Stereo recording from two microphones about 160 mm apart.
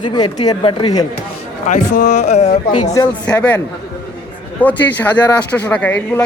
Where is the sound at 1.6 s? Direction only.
55° left (ahead or behind).